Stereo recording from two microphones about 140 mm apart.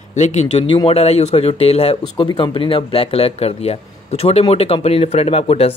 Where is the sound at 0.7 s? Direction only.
40° left (ahead or behind).